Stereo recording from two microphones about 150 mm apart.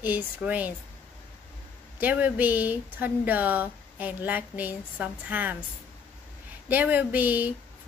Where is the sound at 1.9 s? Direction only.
10° right (ahead or behind).